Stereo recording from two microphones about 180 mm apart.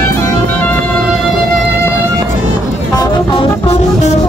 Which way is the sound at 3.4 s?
35° left (ahead or behind).